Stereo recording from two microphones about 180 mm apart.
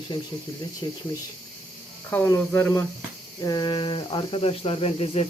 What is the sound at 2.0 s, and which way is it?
Speech, 10° left (ahead or behind).